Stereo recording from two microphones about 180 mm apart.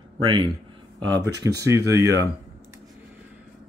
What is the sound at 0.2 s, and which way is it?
Speech, 25° right (ahead or behind).